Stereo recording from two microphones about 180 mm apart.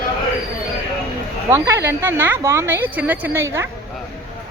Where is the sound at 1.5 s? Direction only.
15° right (ahead or behind).